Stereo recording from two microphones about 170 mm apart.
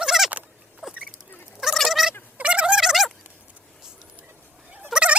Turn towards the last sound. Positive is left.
turn(degrees=-5)  # may be behind; listen again after turning